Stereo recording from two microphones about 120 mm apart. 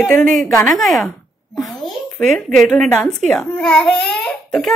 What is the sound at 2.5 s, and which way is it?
Speech, 10° left (ahead or behind).